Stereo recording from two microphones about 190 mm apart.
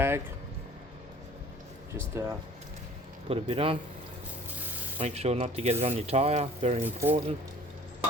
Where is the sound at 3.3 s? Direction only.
30° right (ahead or behind).